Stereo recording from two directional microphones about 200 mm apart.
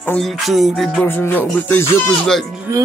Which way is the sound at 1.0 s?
10° left (ahead or behind).